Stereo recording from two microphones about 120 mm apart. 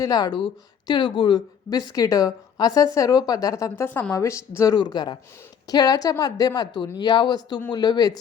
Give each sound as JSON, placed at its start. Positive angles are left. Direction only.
{"t": 0.0, "sound": "a woman's voice", "side_deg": 30}